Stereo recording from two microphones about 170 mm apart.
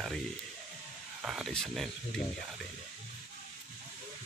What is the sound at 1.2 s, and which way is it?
Speech, centre (ahead or behind).